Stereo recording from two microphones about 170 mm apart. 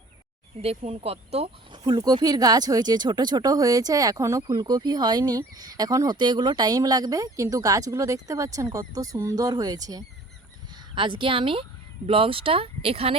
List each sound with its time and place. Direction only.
0.6 s speech: 35° right (ahead or behind)